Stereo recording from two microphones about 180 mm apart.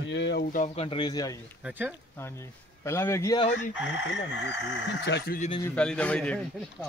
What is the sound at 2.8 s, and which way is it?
Speech, 15° left (ahead or behind).